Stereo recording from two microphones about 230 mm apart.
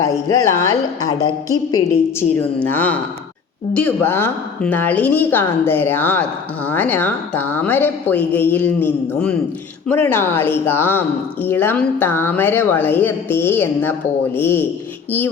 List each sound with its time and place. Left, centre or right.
0.0 s a woman's voice: centre